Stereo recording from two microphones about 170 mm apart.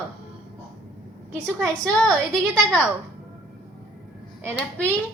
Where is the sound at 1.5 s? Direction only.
5° right (ahead or behind).